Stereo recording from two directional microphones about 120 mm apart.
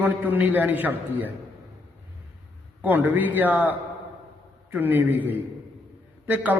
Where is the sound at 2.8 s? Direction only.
15° right (ahead or behind).